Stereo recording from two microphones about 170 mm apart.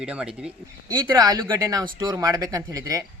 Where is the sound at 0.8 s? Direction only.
20° right (ahead or behind).